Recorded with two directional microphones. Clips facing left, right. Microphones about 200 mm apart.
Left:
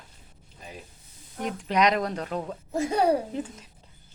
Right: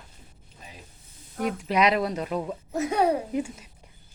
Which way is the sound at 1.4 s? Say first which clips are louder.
Right 1 dB; 10° right (ahead or behind).